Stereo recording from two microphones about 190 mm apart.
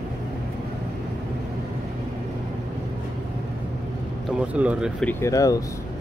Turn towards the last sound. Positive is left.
turn(degrees=20)  # may be behind; listen again after turning